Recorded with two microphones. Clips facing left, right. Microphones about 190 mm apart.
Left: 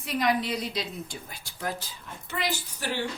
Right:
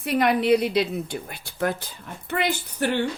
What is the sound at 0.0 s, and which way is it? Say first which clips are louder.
A woman's voice: right 6 dB; 60° right (ahead or behind).